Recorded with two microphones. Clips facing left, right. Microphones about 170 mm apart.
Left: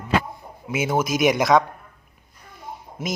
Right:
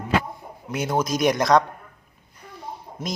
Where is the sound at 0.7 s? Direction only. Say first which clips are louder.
Left 1 dB; 5° left (ahead or behind).